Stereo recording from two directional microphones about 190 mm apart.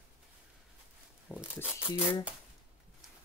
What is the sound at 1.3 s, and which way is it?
Speech, 5° right (ahead or behind).